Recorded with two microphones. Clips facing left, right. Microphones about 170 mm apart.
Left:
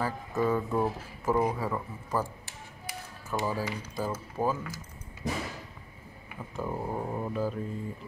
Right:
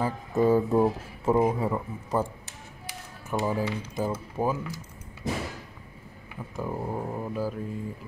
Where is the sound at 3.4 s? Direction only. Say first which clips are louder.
Right 5 dB; 20° right (ahead or behind).